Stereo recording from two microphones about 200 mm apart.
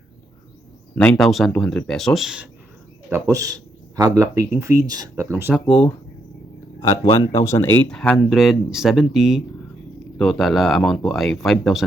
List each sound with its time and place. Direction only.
0.9 s speech: 5° left (ahead or behind)
3.1 s speech: 15° right (ahead or behind)
5.6 s speech: 5° left (ahead or behind)
7.2 s speech: 15° left (ahead or behind)